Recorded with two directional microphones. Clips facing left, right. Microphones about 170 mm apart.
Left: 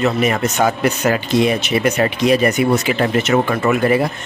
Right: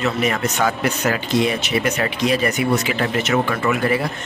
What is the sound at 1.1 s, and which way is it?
Speech, 25° left (ahead or behind).